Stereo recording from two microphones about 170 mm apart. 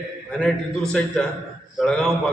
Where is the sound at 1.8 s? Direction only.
5° left (ahead or behind).